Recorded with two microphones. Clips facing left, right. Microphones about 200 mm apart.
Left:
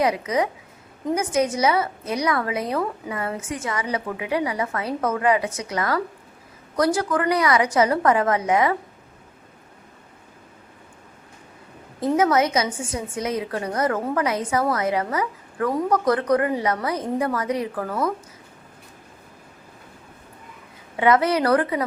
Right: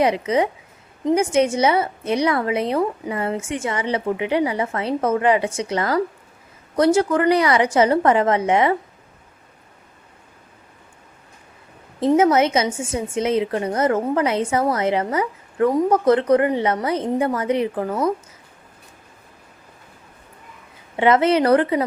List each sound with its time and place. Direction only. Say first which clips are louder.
0.0 s a woman's voice: right 3 dB; 30° right (ahead or behind)
11.9 s a woman's voice: right 4 dB; 25° right (ahead or behind)
20.9 s a woman's voice: right 3 dB; 25° right (ahead or behind)